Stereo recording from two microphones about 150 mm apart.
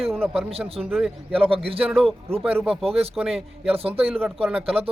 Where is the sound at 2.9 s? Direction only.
40° right (ahead or behind).